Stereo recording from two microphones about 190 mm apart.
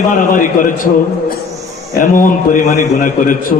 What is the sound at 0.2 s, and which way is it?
Speech, 45° left (ahead or behind).